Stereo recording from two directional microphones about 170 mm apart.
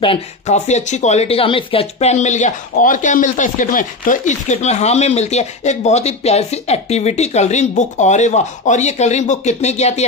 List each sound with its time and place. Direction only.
0.0 s speech: 35° left (ahead or behind)